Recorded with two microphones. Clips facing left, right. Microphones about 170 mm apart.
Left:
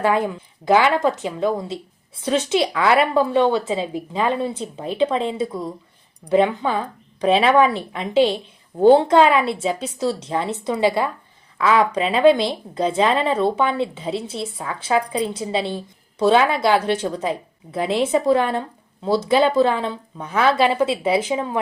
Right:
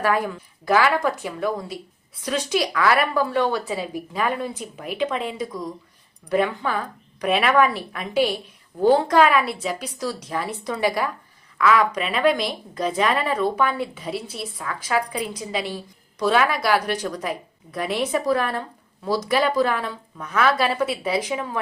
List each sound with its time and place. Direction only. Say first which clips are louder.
0.0 s a woman's voice: left 3 dB; 25° left (ahead or behind)